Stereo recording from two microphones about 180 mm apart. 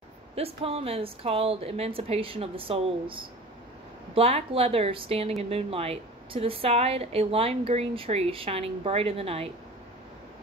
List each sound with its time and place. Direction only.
0.4 s a woman's voice: 35° right (ahead or behind)